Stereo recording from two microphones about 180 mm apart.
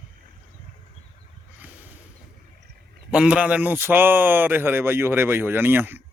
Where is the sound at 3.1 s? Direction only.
5° right (ahead or behind).